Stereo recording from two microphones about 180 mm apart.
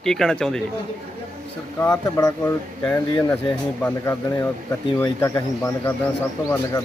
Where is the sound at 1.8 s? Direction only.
15° left (ahead or behind).